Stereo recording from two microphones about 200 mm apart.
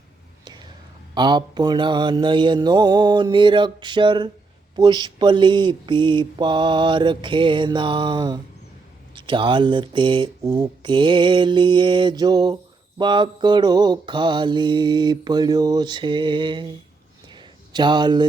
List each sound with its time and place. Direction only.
0.4 s whispering: 20° right (ahead or behind)
1.1 s mantra: 20° right (ahead or behind)
17.2 s a sound: 20° right (ahead or behind)